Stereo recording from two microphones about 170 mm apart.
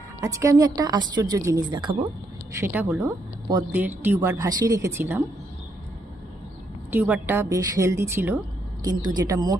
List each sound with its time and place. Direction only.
0.2 s a woman's voice: 20° right (ahead or behind)
2.6 s a woman's voice: 10° right (ahead or behind)
6.9 s a woman's voice: 10° right (ahead or behind)